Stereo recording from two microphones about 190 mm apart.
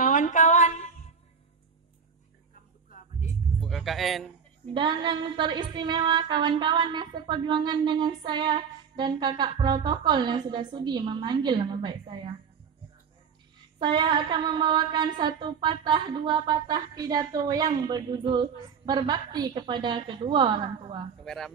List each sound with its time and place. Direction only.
0.0 s a sound: 40° left (ahead or behind)
3.6 s speech: centre (ahead or behind)
4.7 s music: 25° right (ahead or behind)
13.7 s music: 25° right (ahead or behind)
21.2 s speech: centre (ahead or behind)